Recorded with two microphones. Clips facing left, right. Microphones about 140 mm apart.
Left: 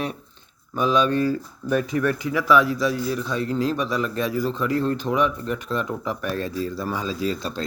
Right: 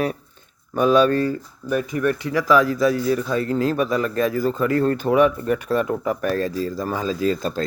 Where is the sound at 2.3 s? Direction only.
40° right (ahead or behind).